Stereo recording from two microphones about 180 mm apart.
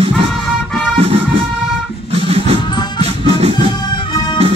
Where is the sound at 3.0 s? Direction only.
35° right (ahead or behind).